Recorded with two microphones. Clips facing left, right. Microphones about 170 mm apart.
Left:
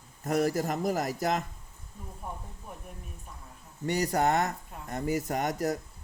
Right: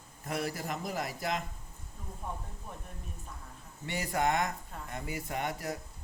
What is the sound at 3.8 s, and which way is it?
A man's voice, 40° left (ahead or behind).